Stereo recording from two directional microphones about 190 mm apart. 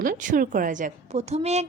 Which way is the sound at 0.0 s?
45° right (ahead or behind).